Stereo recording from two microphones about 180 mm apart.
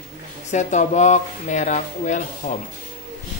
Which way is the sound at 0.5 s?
40° left (ahead or behind).